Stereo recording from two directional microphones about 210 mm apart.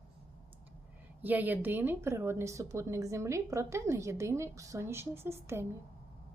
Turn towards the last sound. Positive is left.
turn(degrees=-10)  # may be behind; listen again after turning